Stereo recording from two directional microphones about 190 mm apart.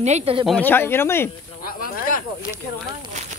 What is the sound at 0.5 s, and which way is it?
Speech, 10° left (ahead or behind).